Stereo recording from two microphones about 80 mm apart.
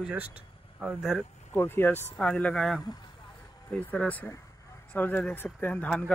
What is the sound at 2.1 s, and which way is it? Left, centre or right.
Speech, centre.